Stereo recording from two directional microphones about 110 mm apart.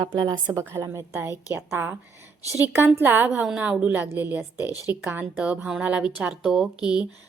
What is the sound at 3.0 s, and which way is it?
A woman's voice, 20° right (ahead or behind).